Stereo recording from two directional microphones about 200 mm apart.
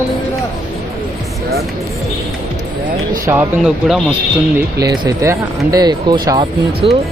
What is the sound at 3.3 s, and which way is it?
Speech, 5° right (ahead or behind).